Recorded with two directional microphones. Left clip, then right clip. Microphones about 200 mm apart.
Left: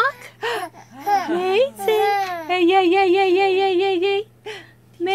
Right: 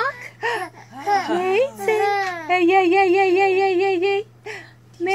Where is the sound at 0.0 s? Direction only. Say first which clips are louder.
Left 2 dB; 35° left (ahead or behind).